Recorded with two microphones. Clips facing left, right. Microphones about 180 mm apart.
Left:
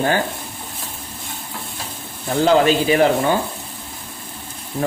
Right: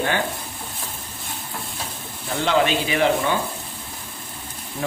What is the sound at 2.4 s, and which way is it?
Speech, 40° left (ahead or behind).